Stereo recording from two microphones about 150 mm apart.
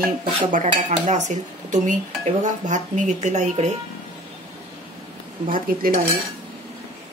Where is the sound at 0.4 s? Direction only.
60° right (ahead or behind).